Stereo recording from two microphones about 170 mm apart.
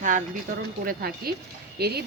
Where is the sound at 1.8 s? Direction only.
70° right (ahead or behind).